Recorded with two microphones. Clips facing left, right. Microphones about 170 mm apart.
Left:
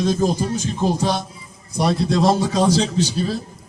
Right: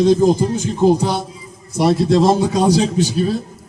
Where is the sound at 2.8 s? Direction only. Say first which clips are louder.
Right 3 dB; 45° right (ahead or behind).